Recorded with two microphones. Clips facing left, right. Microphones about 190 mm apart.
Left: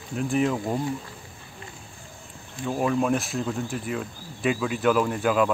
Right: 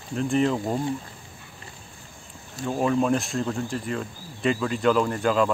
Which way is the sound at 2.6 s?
Centre (ahead or behind).